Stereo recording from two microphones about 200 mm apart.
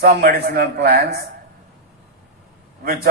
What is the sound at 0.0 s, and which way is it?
A man's voice, 45° right (ahead or behind).